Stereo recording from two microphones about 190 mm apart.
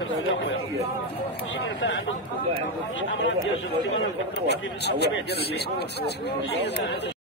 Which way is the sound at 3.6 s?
75° left (ahead or behind).